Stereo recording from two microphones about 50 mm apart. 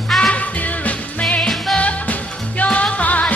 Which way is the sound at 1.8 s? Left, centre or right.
Left.